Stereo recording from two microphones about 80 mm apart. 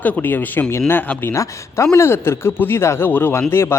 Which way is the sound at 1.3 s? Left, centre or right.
Left.